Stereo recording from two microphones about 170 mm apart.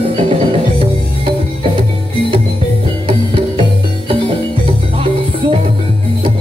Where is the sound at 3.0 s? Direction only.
30° right (ahead or behind).